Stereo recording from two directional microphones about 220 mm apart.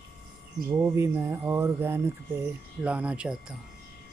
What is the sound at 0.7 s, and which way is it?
Speech, 10° right (ahead or behind).